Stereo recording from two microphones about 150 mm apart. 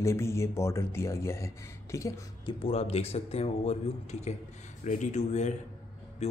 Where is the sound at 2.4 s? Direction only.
40° left (ahead or behind).